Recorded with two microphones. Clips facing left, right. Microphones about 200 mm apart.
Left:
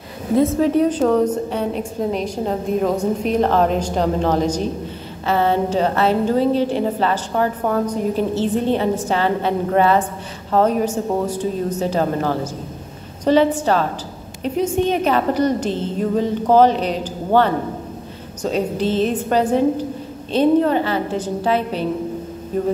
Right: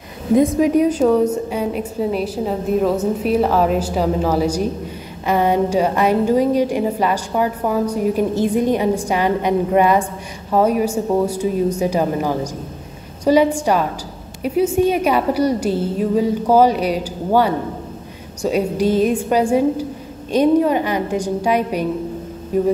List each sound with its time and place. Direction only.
0.4 s a woman's voice: 15° right (ahead or behind)